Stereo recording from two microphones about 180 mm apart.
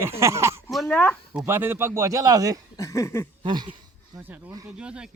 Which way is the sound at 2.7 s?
15° left (ahead or behind).